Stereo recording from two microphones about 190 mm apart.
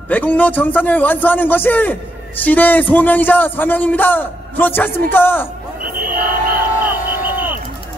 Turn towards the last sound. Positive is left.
turn(degrees=-10)  # may be behind; listen again after turning